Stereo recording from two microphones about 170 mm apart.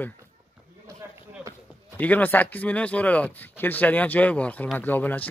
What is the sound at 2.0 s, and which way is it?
Speech, 10° left (ahead or behind).